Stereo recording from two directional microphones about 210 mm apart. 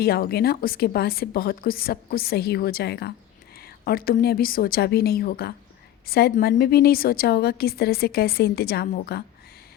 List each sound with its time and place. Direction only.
0.0 s a woman's voice: 50° left (ahead or behind)